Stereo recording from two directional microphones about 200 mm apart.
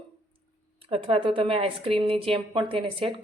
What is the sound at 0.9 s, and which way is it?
A woman's voice, 25° right (ahead or behind).